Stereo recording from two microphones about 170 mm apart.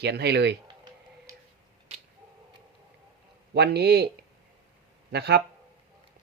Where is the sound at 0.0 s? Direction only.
75° right (ahead or behind).